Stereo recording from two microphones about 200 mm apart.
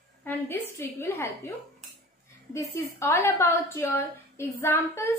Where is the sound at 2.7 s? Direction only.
10° left (ahead or behind).